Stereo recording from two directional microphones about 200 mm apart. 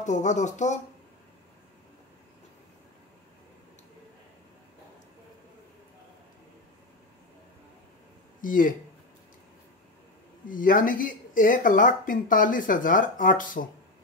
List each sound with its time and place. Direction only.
0.0 s speech: 35° left (ahead or behind)
8.4 s speech: 40° left (ahead or behind)
10.4 s speech: 45° left (ahead or behind)